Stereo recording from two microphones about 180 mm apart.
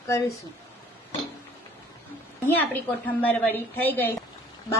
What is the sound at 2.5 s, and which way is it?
A woman's voice, 10° left (ahead or behind).